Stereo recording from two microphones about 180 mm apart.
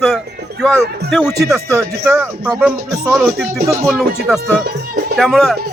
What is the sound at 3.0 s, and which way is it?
Speech, 5° left (ahead or behind).